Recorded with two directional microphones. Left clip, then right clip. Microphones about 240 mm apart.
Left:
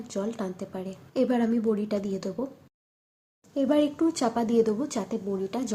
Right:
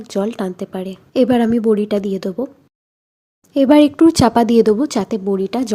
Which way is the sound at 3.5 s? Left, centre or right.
Right.